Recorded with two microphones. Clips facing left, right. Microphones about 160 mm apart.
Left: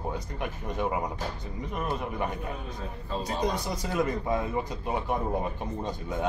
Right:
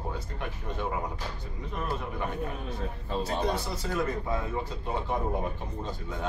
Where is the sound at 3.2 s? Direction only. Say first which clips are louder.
Even; 15° left (ahead or behind).